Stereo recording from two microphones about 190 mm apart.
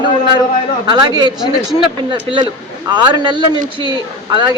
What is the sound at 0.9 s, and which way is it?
Speech, 20° right (ahead or behind).